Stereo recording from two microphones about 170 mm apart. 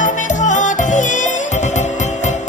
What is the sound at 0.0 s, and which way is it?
Music, 45° left (ahead or behind).